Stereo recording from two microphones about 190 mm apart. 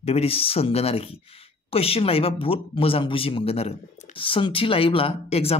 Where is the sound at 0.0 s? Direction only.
30° left (ahead or behind).